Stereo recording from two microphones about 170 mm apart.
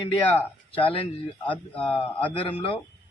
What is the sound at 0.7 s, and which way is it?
A man's voice, 30° left (ahead or behind).